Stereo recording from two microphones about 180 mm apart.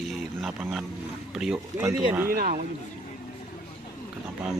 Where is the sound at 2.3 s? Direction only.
55° right (ahead or behind).